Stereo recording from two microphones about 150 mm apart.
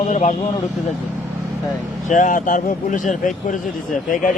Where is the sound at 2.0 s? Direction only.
60° left (ahead or behind).